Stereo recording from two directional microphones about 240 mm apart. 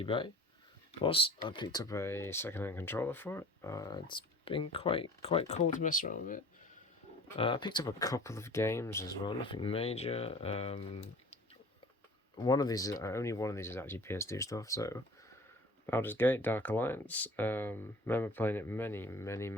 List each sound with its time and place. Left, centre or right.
0.0 s speech: left
7.3 s speech: left
12.4 s speech: centre